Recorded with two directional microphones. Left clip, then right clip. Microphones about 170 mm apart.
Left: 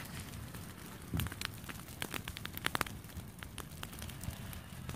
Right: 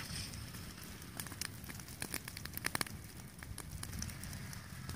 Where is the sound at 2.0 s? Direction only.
40° right (ahead or behind).